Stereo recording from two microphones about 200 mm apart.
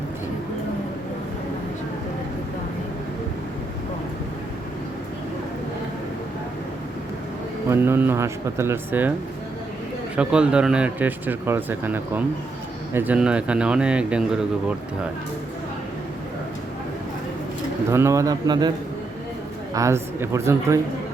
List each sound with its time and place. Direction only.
7.7 s speech: 10° right (ahead or behind)
10.2 s speech: 5° right (ahead or behind)
17.9 s speech: 15° right (ahead or behind)
19.7 s speech: 15° right (ahead or behind)